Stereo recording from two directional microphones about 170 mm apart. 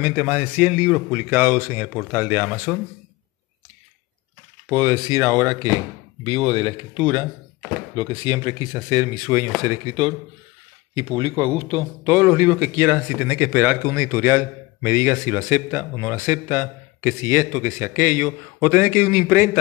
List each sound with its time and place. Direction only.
0.0 s speech: 5° right (ahead or behind)
4.6 s speech: 25° right (ahead or behind)
6.2 s speech: 35° right (ahead or behind)
12.1 s speech: 15° right (ahead or behind)